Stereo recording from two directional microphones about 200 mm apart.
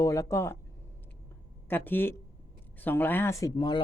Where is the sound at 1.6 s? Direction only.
10° left (ahead or behind).